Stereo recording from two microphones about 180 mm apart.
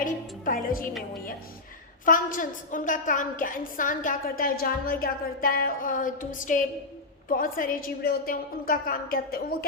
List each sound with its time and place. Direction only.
0.0 s a woman's voice: 50° left (ahead or behind)
2.0 s a woman's voice: 50° left (ahead or behind)